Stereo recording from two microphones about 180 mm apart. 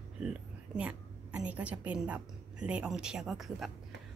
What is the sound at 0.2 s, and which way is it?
A woman's voice, 5° right (ahead or behind).